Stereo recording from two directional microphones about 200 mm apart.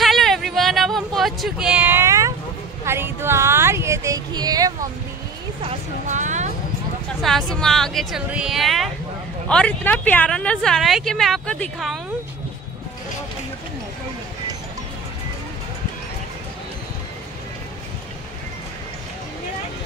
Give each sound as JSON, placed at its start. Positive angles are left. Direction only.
{"t": 0.0, "sound": "a sound", "side_deg": 0}
{"t": 5.6, "sound": "speech", "side_deg": -35}
{"t": 7.2, "sound": "speech", "side_deg": 0}